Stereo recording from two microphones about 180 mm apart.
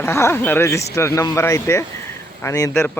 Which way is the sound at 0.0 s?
15° left (ahead or behind).